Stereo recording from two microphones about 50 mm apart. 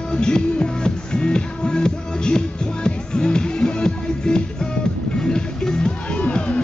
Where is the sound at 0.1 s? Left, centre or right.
Centre.